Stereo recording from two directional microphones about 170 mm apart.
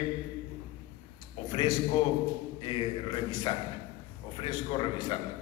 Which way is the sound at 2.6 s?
30° left (ahead or behind).